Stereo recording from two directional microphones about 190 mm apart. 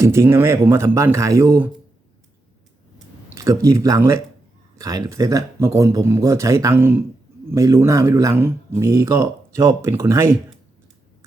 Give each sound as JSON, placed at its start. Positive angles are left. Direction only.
{"t": 0.0, "sound": "speech", "side_deg": -15}
{"t": 3.3, "sound": "speech", "side_deg": -15}